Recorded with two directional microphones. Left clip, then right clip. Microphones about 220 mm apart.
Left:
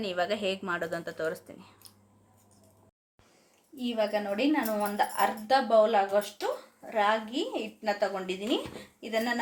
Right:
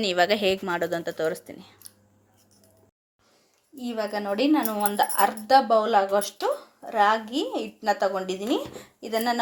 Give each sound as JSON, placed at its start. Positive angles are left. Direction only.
{"t": 0.0, "sound": "a woman's voice", "side_deg": -35}
{"t": 3.8, "sound": "a woman's voice", "side_deg": -20}